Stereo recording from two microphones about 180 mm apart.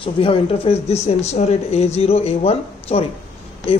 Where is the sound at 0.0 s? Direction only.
30° left (ahead or behind).